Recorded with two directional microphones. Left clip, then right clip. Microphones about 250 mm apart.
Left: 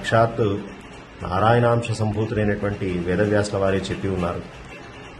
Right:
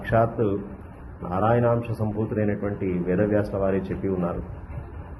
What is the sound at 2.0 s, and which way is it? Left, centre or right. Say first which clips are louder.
Speech: left 4 dB; centre.